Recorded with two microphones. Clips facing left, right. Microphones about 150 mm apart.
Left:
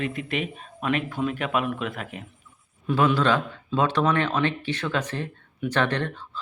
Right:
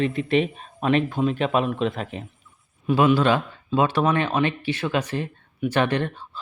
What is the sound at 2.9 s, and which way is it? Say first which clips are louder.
Speech: right 3 dB; 10° right (ahead or behind).